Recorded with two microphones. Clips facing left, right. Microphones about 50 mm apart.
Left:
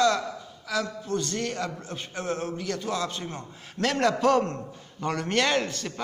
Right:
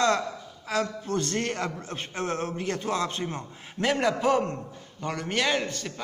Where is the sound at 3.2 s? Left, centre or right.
Centre.